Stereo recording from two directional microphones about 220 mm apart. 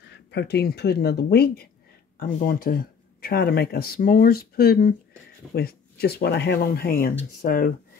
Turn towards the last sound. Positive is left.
turn(degrees=40)  # may be behind; listen again after turning